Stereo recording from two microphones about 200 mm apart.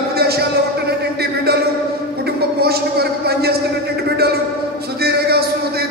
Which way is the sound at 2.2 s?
50° right (ahead or behind).